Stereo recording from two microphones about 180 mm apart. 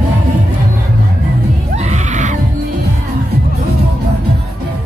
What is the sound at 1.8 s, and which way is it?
Screaming, 40° right (ahead or behind).